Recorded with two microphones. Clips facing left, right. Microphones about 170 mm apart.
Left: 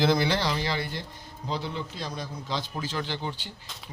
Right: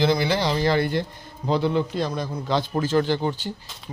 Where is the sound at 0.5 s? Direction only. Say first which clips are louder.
Right 10 dB; 50° right (ahead or behind).